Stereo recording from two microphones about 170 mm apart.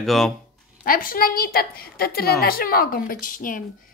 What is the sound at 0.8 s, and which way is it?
A woman's voice, 55° left (ahead or behind).